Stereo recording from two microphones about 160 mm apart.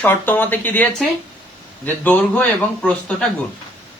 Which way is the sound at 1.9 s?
10° left (ahead or behind).